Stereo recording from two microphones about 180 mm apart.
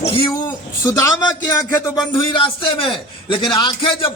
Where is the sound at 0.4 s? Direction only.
15° left (ahead or behind).